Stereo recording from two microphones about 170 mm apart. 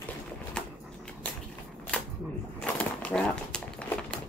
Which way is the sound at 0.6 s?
5° left (ahead or behind).